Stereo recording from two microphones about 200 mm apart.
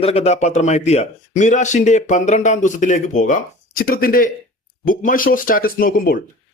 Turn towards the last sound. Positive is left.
turn(degrees=45)  # may be behind; listen again after turning